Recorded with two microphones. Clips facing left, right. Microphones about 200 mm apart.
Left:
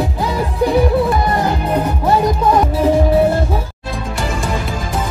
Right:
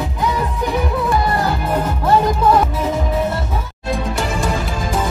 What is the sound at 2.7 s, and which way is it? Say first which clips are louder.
Music: left 7 dB; 30° left (ahead or behind).